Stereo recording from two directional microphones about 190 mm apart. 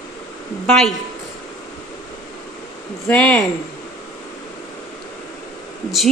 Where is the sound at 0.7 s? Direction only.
5° left (ahead or behind).